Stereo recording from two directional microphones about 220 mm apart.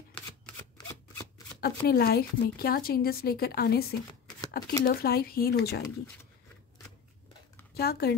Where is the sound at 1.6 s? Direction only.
45° left (ahead or behind).